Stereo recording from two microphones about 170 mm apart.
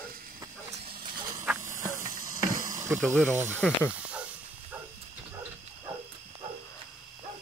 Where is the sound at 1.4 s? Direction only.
10° right (ahead or behind).